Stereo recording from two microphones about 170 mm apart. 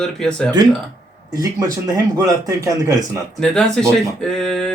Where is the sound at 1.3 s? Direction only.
20° right (ahead or behind).